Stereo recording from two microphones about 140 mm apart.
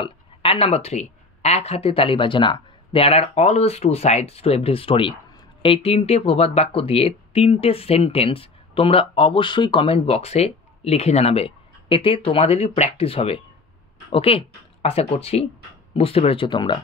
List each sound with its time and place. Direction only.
0.0 s speech: 40° left (ahead or behind)